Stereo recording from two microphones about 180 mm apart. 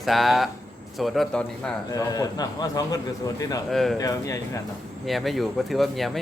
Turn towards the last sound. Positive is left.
turn(degrees=0)  # may be behind; listen again after turning